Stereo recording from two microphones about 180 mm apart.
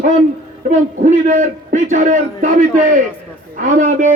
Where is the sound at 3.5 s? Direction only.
45° right (ahead or behind).